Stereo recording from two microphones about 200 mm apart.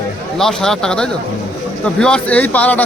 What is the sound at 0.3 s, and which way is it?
Speech, centre (ahead or behind).